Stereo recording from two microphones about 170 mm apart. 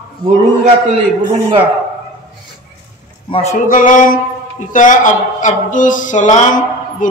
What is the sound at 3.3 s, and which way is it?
Speech, 35° left (ahead or behind).